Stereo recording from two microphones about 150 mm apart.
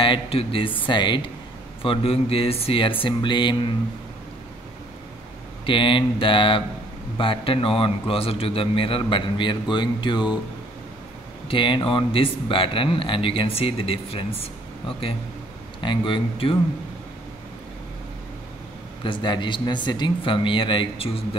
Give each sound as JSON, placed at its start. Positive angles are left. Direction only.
{"t": 0.0, "sound": "a man's voice", "side_deg": 40}
{"t": 5.7, "sound": "a man's voice", "side_deg": 35}
{"t": 11.4, "sound": "a man's voice", "side_deg": 35}
{"t": 14.4, "sound": "air conditioning", "side_deg": 40}
{"t": 15.8, "sound": "a man's voice", "side_deg": 30}
{"t": 19.0, "sound": "a man's voice", "side_deg": 30}